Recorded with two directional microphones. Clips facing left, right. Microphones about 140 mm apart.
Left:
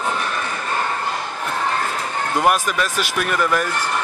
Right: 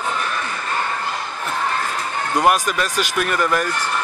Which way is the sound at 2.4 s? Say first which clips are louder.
Right 1 dB; centre (ahead or behind).